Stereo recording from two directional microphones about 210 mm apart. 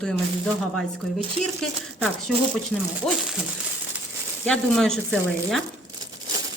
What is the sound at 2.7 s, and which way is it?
Speech, 5° left (ahead or behind).